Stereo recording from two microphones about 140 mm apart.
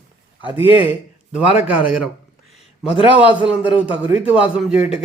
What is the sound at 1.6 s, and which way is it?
Speech, 10° right (ahead or behind).